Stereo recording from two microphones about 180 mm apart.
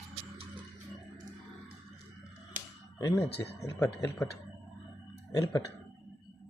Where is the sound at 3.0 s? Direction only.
20° left (ahead or behind).